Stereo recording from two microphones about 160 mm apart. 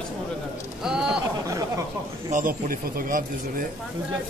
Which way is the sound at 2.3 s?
60° right (ahead or behind).